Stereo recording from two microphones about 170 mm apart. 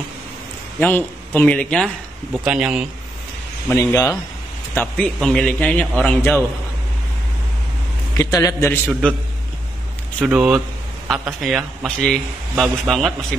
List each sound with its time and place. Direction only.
0.7 s a man's voice: 10° left (ahead or behind); by 2.9 s 5° right (ahead or behind)
3.7 s speech: 15° left (ahead or behind)
4.7 s a man's voice: 5° left (ahead or behind)
8.2 s a man's voice: 20° left (ahead or behind)
10.2 s a man's voice: 5° right (ahead or behind)